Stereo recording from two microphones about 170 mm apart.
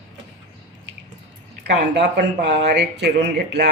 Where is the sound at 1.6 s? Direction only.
80° right.